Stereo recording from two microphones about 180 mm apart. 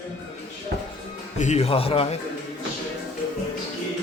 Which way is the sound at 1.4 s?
35° left (ahead or behind).